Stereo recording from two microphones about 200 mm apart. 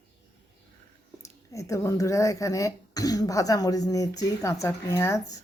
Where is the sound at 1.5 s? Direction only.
15° left (ahead or behind).